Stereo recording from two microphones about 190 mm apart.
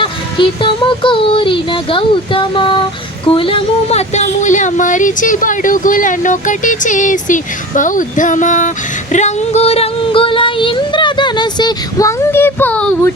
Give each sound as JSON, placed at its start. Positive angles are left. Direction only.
{"t": 0.0, "sound": "a sound", "side_deg": 25}
{"t": 3.2, "sound": "speech", "side_deg": 30}
{"t": 9.1, "sound": "female singing", "side_deg": 35}